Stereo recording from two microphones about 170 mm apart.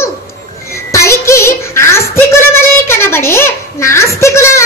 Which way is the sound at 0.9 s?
15° left (ahead or behind).